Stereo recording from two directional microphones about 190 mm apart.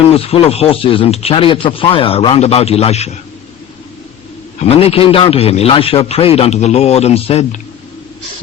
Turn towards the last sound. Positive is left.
turn(degrees=35)  # may be behind; listen again after turning